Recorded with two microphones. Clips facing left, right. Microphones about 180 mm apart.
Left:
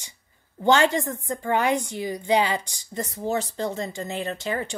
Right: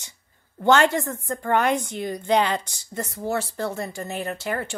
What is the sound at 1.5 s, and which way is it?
Speech, 60° right (ahead or behind).